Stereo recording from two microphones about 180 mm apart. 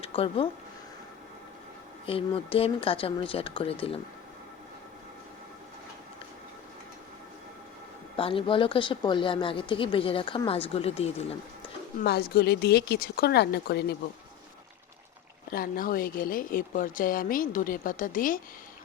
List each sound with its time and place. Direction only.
0.0 s speech: 30° left (ahead or behind)
2.0 s speech: 30° left (ahead or behind)
8.1 s speech: 30° left (ahead or behind)
11.9 s speech: 60° left (ahead or behind)
15.5 s speech: 50° left (ahead or behind)